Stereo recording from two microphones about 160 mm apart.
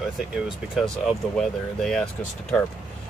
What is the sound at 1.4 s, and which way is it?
Speech, 5° left (ahead or behind).